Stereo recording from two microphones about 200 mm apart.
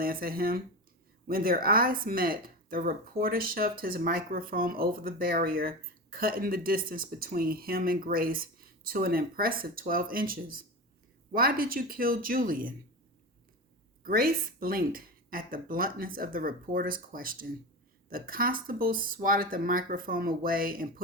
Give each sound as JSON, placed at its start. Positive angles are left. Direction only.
{"t": 0.0, "sound": "speech", "side_deg": -45}
{"t": 14.0, "sound": "speech", "side_deg": -45}